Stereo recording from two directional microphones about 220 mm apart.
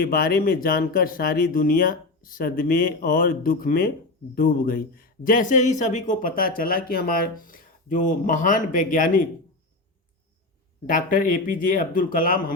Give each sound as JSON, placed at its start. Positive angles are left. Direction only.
{"t": 0.0, "sound": "speech", "side_deg": 40}
{"t": 10.8, "sound": "speech", "side_deg": 35}